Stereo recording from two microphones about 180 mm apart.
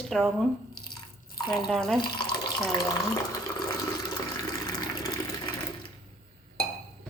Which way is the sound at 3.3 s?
25° left (ahead or behind).